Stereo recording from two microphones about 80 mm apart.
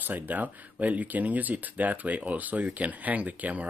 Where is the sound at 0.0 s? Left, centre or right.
Right.